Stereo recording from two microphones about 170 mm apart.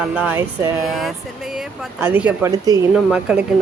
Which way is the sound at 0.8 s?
Centre (ahead or behind).